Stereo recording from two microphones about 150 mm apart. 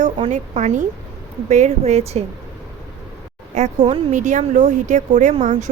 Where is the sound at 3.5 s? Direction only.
50° right (ahead or behind).